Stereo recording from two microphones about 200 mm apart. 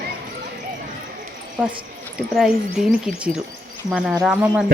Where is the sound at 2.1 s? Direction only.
Centre (ahead or behind).